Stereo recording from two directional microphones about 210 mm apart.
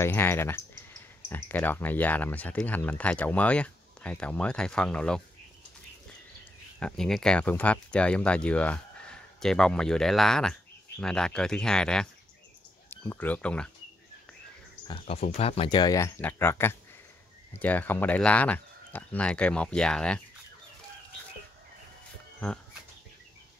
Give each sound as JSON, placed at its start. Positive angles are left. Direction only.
{"t": 0.0, "sound": "speech", "side_deg": 10}
{"t": 6.8, "sound": "speech", "side_deg": 0}
{"t": 14.9, "sound": "speech", "side_deg": 25}